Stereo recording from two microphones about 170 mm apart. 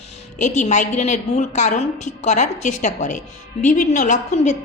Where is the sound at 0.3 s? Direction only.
45° left (ahead or behind).